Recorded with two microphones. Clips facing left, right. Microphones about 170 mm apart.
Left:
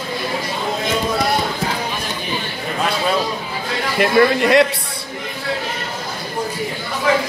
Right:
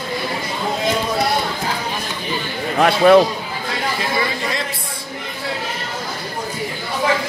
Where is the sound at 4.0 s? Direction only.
65° left (ahead or behind).